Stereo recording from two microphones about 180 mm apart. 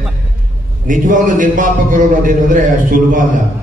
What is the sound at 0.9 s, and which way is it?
A man's voice, 45° right (ahead or behind).